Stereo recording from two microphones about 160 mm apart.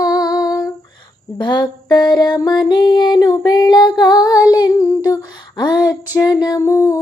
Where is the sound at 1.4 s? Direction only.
30° left (ahead or behind).